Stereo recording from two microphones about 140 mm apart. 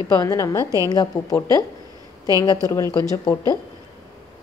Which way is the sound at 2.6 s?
20° left (ahead or behind).